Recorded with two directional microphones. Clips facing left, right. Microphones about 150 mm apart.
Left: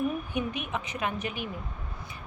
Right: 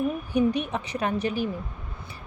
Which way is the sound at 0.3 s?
35° right (ahead or behind).